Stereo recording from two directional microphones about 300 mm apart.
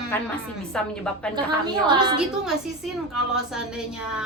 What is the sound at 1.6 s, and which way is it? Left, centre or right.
Speech, centre.